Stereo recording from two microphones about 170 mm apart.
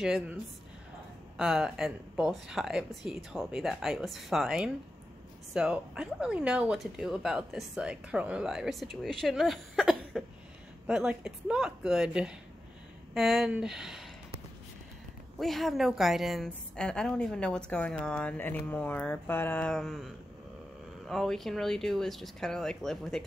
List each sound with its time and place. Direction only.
0.0 s speech: 5° right (ahead or behind)
15.3 s speech: centre (ahead or behind)
21.1 s speech: centre (ahead or behind)